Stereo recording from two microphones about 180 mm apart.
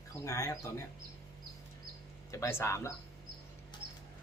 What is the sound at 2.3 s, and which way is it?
Speech, 15° left (ahead or behind).